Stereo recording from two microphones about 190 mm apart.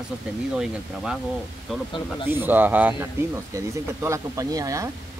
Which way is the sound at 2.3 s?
10° right (ahead or behind).